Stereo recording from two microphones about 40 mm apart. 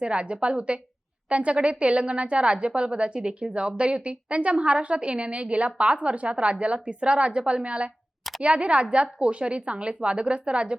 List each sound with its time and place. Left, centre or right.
0.0 s a woman's voice: right